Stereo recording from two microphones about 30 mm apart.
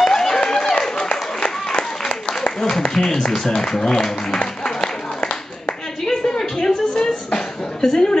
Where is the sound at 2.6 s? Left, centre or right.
Left.